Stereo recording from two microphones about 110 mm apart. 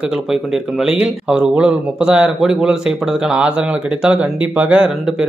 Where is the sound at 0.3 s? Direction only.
5° right (ahead or behind).